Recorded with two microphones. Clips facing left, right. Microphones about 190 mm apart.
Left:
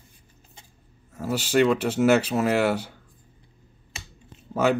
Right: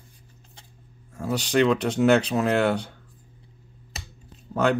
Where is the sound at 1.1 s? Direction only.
5° left (ahead or behind).